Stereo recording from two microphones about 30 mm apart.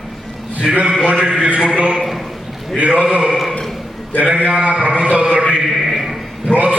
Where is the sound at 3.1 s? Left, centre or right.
Right.